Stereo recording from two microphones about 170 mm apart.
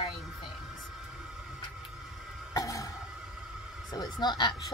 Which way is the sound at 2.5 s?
20° left (ahead or behind).